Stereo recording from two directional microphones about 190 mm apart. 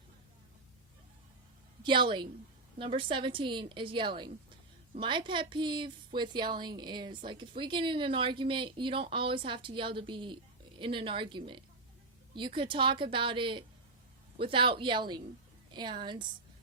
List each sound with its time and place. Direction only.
1.8 s speech: 25° right (ahead or behind)